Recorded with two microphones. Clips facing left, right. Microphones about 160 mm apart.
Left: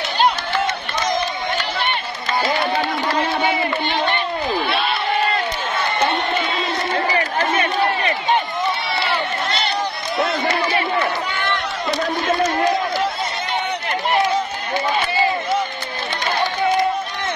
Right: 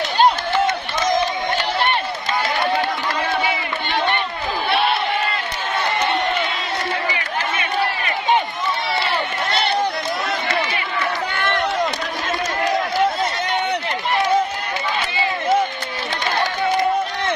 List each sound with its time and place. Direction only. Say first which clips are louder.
7.1 s crowd: left 5 dB; 35° left (ahead or behind)
11.3 s run: right 1 dB; 55° right (ahead or behind)